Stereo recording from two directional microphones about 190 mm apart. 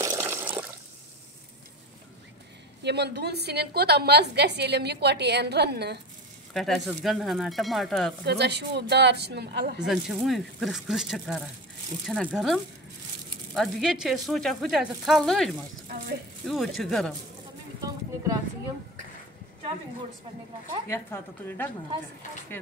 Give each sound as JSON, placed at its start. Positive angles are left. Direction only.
{"t": 0.0, "sound": "water", "side_deg": -15}
{"t": 2.8, "sound": "a woman's voice", "side_deg": -60}
{"t": 6.5, "sound": "speech", "side_deg": 0}
{"t": 8.3, "sound": "a woman's voice", "side_deg": -60}
{"t": 9.8, "sound": "speech", "side_deg": 0}
{"t": 13.6, "sound": "speech", "side_deg": 0}
{"t": 17.8, "sound": "a sound", "side_deg": -20}
{"t": 20.9, "sound": "a woman's voice", "side_deg": 10}